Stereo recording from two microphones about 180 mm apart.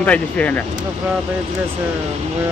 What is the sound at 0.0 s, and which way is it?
Speech, 5° left (ahead or behind).